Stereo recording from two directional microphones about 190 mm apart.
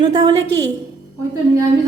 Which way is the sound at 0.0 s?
20° right (ahead or behind).